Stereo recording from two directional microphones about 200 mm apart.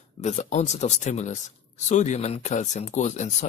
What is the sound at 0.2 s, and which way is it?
Speech, 35° left (ahead or behind).